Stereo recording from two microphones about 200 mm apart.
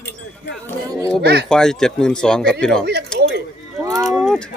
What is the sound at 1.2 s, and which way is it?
Speech, 55° right (ahead or behind).